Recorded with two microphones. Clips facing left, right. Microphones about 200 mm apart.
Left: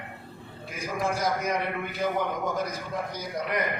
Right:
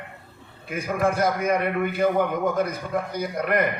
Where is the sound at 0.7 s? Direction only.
55° right (ahead or behind).